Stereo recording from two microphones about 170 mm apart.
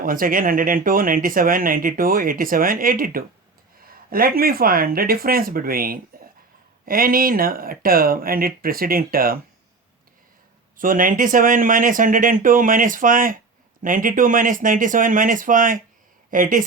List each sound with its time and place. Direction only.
0.0 s speech: 55° right (ahead or behind)
10.8 s speech: 55° right (ahead or behind)